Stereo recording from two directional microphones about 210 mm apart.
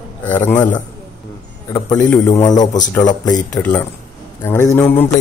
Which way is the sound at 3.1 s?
20° left (ahead or behind).